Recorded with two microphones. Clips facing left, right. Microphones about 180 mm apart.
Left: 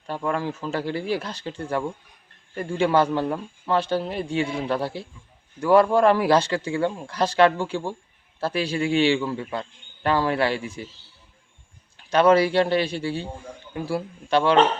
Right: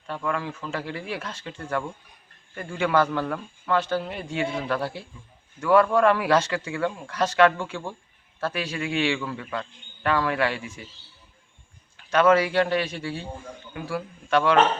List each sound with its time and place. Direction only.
0.1 s a man's voice: 35° left (ahead or behind)
12.1 s a man's voice: 35° left (ahead or behind)